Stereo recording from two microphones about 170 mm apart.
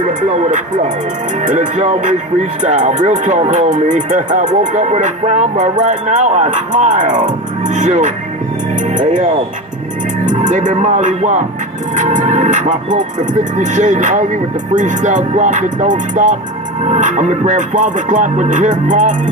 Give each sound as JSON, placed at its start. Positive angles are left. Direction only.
{"t": 1.4, "sound": "speech", "side_deg": -45}